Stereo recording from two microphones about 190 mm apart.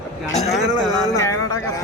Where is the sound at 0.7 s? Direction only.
20° left (ahead or behind).